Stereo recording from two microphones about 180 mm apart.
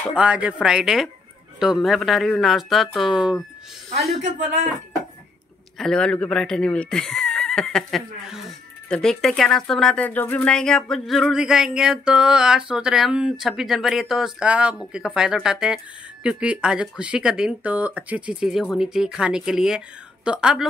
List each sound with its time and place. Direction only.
0.1 s speech: 5° right (ahead or behind)
5.8 s speech: 5° left (ahead or behind)